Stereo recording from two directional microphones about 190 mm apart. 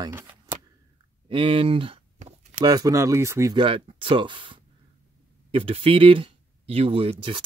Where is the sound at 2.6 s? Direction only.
20° right (ahead or behind).